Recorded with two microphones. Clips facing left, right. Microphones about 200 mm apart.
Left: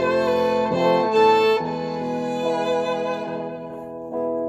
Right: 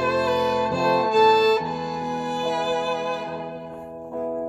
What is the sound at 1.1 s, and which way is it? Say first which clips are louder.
Music: even; 55° left (ahead or behind).